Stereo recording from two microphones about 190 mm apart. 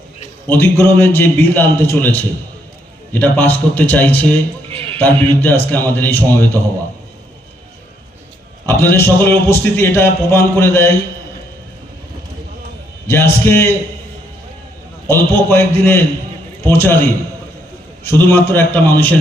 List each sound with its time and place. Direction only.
0.4 s a man's voice: 10° left (ahead or behind)
4.7 s a sound: 30° right (ahead or behind)
4.9 s a man's voice: 10° left (ahead or behind)
8.6 s a man's voice: 10° left (ahead or behind)
13.1 s a man's voice: 15° left (ahead or behind)
15.1 s a man's voice: 15° left (ahead or behind)
18.0 s a man's voice: 15° left (ahead or behind)